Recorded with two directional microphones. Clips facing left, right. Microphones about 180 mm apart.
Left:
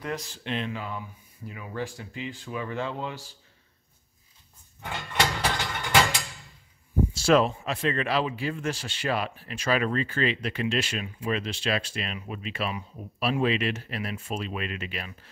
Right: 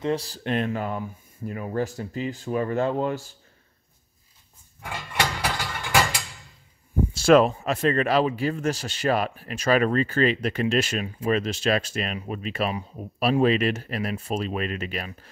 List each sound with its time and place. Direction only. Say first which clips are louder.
0.0 s speech: right 7 dB; 30° right (ahead or behind); by 3.3 s 50° right (ahead or behind)
4.8 s a sound: even; 10° right (ahead or behind)
7.2 s speech: right 5 dB; 55° right (ahead or behind)